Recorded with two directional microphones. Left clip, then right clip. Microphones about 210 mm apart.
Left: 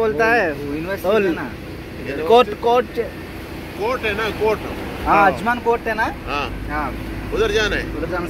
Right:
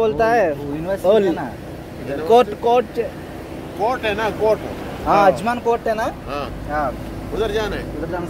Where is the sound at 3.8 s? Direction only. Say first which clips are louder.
Right 1 dB; 55° right (ahead or behind).